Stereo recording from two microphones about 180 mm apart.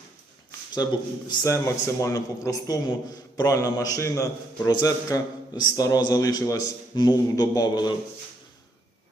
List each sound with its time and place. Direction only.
0.8 s a man's voice: 20° left (ahead or behind)